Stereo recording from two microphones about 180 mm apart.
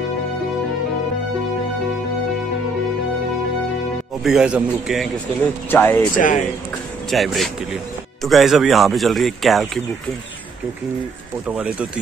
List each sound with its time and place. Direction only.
4.2 s speech: 5° right (ahead or behind)
5.7 s speech: 10° left (ahead or behind)
6.1 s speech: 45° left (ahead or behind)
7.1 s speech: centre (ahead or behind)
11.4 s speech: 5° right (ahead or behind)